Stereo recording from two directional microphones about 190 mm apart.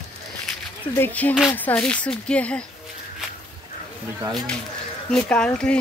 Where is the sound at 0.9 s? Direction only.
10° left (ahead or behind).